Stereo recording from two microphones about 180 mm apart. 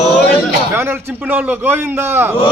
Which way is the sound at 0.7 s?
15° right (ahead or behind).